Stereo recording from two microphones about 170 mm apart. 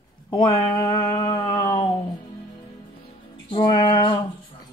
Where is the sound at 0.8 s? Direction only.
20° left (ahead or behind); by 1.9 s 35° left (ahead or behind).